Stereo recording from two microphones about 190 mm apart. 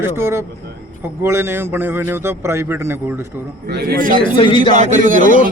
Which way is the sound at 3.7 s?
55° right (ahead or behind).